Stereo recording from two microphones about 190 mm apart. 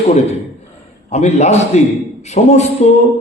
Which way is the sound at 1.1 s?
35° left (ahead or behind).